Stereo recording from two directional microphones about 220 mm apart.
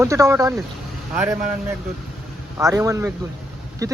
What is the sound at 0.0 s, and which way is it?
Speech, 15° right (ahead or behind).